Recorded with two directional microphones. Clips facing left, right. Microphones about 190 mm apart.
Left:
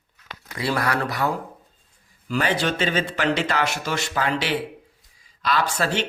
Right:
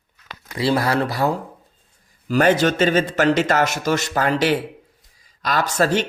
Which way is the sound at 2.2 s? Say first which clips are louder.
Right 7 dB; 45° right (ahead or behind).